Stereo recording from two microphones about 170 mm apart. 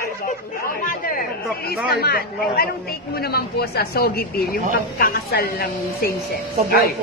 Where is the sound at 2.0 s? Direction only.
65° left (ahead or behind).